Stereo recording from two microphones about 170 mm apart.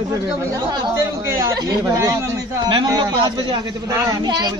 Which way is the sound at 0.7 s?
15° right (ahead or behind).